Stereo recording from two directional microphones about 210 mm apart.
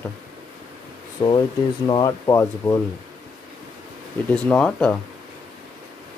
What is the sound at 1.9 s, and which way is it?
Speech, 20° left (ahead or behind).